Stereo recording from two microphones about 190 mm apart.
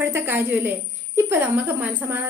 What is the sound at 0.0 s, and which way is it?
Speech, 10° right (ahead or behind).